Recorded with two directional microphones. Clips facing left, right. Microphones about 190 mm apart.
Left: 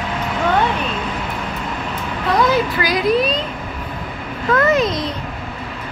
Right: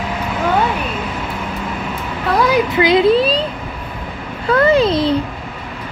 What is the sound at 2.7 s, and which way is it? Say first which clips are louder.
Speech: right 5 dB; 25° right (ahead or behind).